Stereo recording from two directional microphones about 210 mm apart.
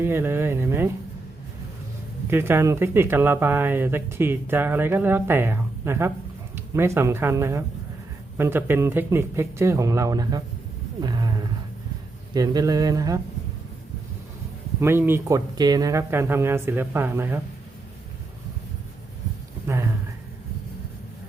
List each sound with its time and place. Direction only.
0.0 s speech: 10° right (ahead or behind)
2.3 s speech: 10° right (ahead or behind)
11.0 s roaring cats: 20° right (ahead or behind)
12.3 s speech: 20° right (ahead or behind)
14.8 s speech: 10° right (ahead or behind)
19.6 s speech: 15° right (ahead or behind)